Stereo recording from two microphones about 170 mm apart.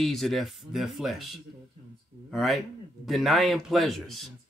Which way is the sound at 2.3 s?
Centre (ahead or behind).